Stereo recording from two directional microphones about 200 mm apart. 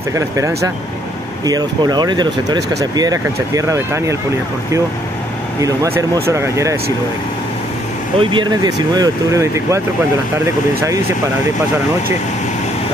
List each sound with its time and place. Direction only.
0.1 s speech: 15° right (ahead or behind)
5.6 s speech: 15° right (ahead or behind)
8.2 s speech: 25° right (ahead or behind)